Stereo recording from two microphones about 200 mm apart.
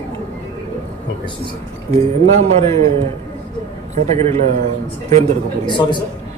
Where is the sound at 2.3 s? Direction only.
35° right (ahead or behind).